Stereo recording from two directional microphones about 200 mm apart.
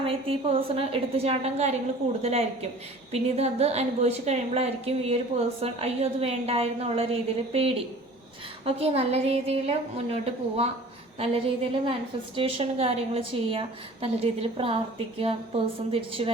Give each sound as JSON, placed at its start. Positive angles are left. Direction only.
{"t": 0.0, "sound": "a woman's voice", "side_deg": -30}
{"t": 11.2, "sound": "a woman's voice", "side_deg": -30}